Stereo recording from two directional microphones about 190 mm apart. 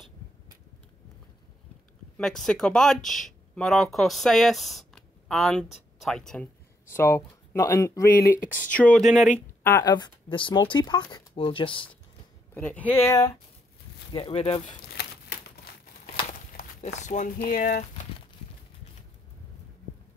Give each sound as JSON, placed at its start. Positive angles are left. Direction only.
{"t": 2.1, "sound": "speech", "side_deg": 5}
{"t": 8.4, "sound": "speech", "side_deg": 45}
{"t": 8.7, "sound": "speech", "side_deg": 5}
{"t": 9.6, "sound": "speech", "side_deg": 15}
{"t": 12.5, "sound": "speech", "side_deg": 10}
{"t": 14.1, "sound": "speech", "side_deg": 30}
{"t": 16.3, "sound": "speech", "side_deg": 45}